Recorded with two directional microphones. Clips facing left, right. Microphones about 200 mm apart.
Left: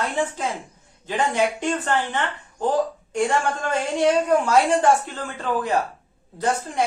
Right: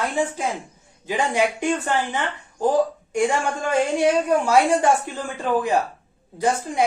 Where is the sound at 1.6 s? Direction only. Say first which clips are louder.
Right 1 dB; 10° right (ahead or behind).